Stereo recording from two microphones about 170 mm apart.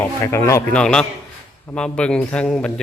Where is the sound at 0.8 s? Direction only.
5° left (ahead or behind).